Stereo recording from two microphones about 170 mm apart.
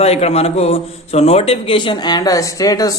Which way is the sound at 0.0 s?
40° left (ahead or behind).